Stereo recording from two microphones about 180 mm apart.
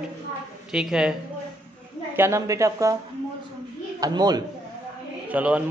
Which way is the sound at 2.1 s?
15° right (ahead or behind).